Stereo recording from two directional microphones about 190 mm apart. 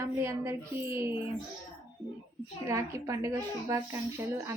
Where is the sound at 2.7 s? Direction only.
15° right (ahead or behind).